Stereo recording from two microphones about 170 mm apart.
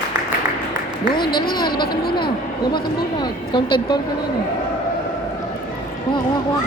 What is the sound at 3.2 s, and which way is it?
Speech, 25° left (ahead or behind).